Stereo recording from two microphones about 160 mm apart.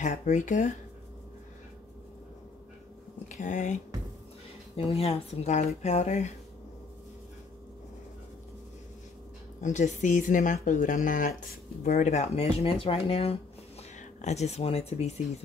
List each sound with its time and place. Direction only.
0.0 s speech: 50° left (ahead or behind)
3.3 s speech: 50° left (ahead or behind)
4.7 s speech: 40° left (ahead or behind)
9.6 s speech: 50° left (ahead or behind)